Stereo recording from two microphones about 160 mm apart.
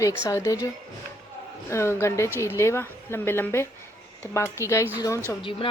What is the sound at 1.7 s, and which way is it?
Speech, 15° left (ahead or behind).